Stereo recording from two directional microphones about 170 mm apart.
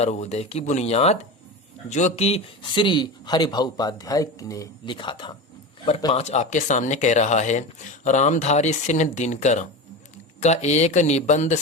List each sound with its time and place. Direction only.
0.0 s speech: 40° left (ahead or behind)